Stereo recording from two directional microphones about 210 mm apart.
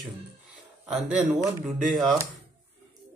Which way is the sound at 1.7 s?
Centre (ahead or behind).